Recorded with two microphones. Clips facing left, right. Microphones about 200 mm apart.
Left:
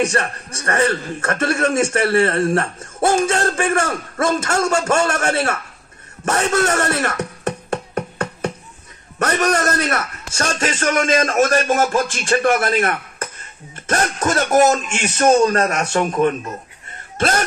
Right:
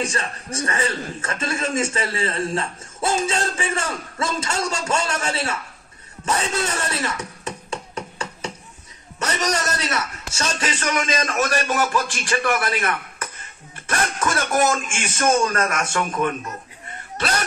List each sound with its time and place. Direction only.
0.0 s a man's voice: 70° left (ahead or behind)
6.2 s music: 70° left (ahead or behind)
9.2 s a man's voice: 55° left (ahead or behind)